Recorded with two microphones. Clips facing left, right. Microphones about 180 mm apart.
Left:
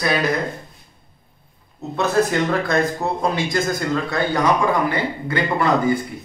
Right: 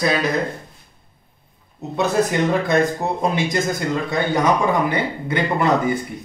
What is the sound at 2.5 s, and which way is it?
A man's voice, 15° right (ahead or behind).